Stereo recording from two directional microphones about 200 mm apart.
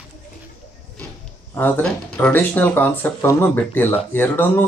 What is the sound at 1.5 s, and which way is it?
Speech, 10° left (ahead or behind).